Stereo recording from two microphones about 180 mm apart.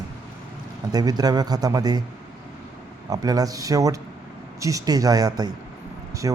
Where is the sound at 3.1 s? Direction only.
20° right (ahead or behind).